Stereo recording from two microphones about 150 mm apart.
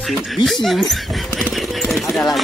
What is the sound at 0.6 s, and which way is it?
Speech, centre (ahead or behind).